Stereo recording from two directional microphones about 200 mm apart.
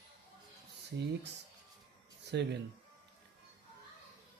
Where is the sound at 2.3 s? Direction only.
60° right (ahead or behind).